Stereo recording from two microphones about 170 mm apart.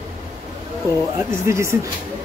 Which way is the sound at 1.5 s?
15° right (ahead or behind).